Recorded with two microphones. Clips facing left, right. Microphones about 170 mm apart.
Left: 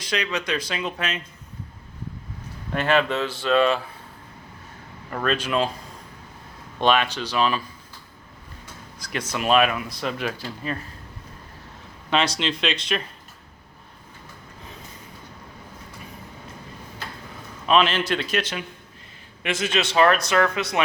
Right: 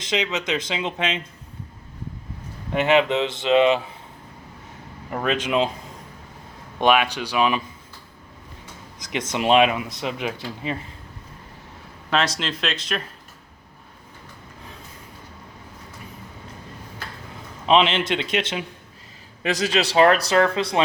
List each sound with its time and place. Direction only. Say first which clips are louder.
0.0 s speech: right 2 dB; 20° right (ahead or behind)
2.7 s speech: right 3 dB; 20° right (ahead or behind)
5.1 s speech: right 1 dB; 15° right (ahead or behind)
6.7 s speech: right 2 dB; 10° right (ahead or behind)
9.0 s speech: right 3 dB; 20° right (ahead or behind)
12.1 s speech: even; centre (ahead or behind)
17.7 s speech: right 2 dB; 25° right (ahead or behind)
19.4 s a man's voice: right 3 dB; 35° right (ahead or behind)